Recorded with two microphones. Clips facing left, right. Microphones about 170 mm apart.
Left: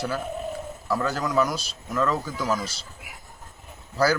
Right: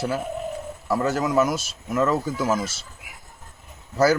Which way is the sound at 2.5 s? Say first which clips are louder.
Even; 25° right (ahead or behind).